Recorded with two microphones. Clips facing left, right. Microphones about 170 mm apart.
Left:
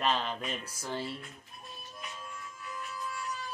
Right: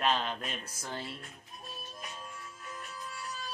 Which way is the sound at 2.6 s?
40° right (ahead or behind).